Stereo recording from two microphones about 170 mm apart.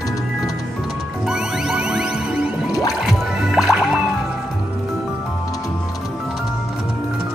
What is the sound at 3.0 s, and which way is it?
Music, centre (ahead or behind).